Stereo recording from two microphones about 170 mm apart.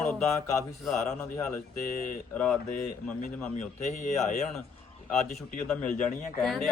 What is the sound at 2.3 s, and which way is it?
Speech, 5° left (ahead or behind).